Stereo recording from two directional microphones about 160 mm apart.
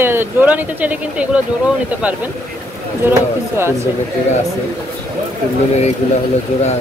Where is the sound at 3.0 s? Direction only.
15° right (ahead or behind).